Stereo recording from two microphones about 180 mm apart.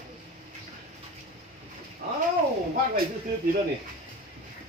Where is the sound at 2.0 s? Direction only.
40° right (ahead or behind).